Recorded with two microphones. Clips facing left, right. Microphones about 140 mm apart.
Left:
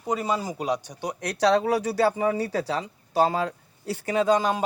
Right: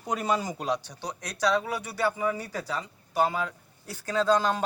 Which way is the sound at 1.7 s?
90° left.